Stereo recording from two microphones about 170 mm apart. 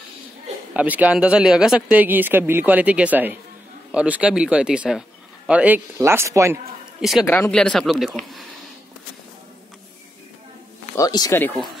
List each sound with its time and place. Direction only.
0.7 s speech: 10° right (ahead or behind)
7.0 s speech: centre (ahead or behind)
7.2 s speech: 10° left (ahead or behind)
11.0 s speech: 20° left (ahead or behind)